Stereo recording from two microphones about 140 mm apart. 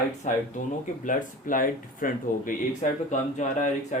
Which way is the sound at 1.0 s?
75° left (ahead or behind).